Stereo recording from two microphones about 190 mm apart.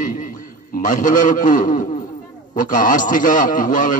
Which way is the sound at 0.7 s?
45° left (ahead or behind).